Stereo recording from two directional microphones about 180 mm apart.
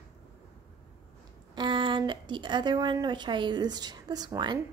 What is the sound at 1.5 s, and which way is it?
A woman's voice, 25° right (ahead or behind).